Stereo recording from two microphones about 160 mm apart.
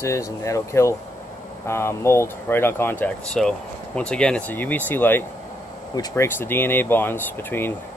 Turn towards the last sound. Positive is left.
turn(degrees=15)  # may be behind; listen again after turning